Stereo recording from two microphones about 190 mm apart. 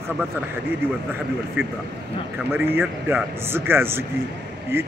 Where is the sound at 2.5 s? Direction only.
10° right (ahead or behind).